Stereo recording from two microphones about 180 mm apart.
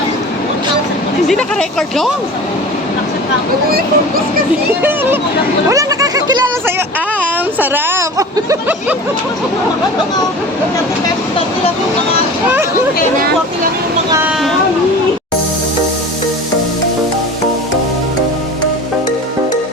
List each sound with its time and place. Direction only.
1.3 s speech: centre (ahead or behind)
3.7 s speech: 55° right (ahead or behind)
4.8 s speech: 10° right (ahead or behind)
5.6 s a sound: 20° right (ahead or behind)
7.6 s speech: 10° right (ahead or behind)
14.1 s speech: 15° right (ahead or behind)